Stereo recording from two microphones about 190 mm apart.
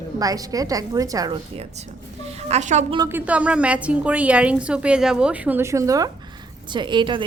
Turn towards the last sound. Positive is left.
turn(degrees=-25)  # may be behind; listen again after turning